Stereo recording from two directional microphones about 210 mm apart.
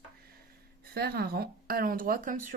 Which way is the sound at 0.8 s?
50° right (ahead or behind).